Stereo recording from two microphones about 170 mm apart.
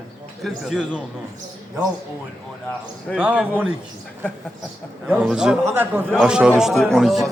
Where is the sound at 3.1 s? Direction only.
5° right (ahead or behind).